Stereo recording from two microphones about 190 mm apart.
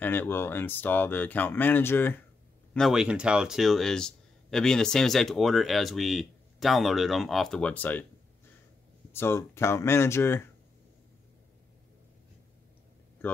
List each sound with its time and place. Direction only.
0.0 s speech: 10° left (ahead or behind)
2.7 s speech: centre (ahead or behind)
9.1 s speech: 15° left (ahead or behind)